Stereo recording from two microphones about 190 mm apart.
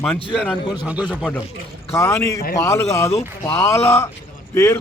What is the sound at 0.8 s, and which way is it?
Speech, 5° right (ahead or behind).